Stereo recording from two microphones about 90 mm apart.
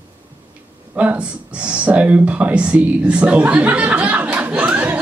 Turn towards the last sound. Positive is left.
turn(degrees=-15)  # may be behind; listen again after turning